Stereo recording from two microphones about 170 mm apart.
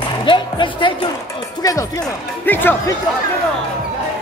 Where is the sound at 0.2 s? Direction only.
30° left (ahead or behind).